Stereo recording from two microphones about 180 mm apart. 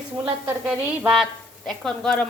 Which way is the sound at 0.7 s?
5° right (ahead or behind).